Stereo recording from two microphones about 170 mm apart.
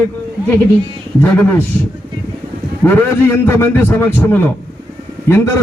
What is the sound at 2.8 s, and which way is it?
A man's voice, 15° left (ahead or behind).